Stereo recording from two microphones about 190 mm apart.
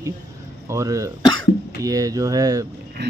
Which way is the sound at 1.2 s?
20° left (ahead or behind).